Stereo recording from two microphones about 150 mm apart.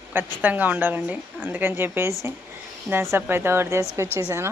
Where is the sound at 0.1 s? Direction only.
10° right (ahead or behind).